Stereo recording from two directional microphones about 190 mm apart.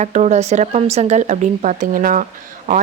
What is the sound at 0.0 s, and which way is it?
Speech, 35° right (ahead or behind).